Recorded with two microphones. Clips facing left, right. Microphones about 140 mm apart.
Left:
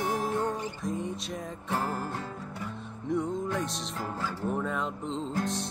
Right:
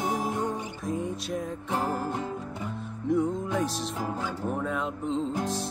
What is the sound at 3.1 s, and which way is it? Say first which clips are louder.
Speech: right 4 dB; centre (ahead or behind).